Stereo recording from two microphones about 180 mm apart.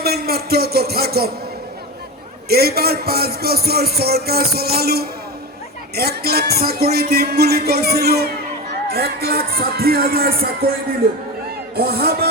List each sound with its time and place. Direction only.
0.0 s a man's voice: 60° right (ahead or behind)
2.5 s a man's voice: 60° right (ahead or behind)
11.8 s a man's voice: 60° right (ahead or behind)